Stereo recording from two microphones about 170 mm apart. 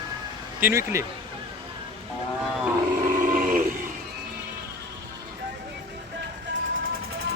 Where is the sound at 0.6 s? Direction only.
15° right (ahead or behind).